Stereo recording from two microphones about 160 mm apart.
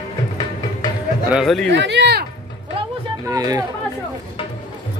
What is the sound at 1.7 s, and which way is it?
Speech, 90° right.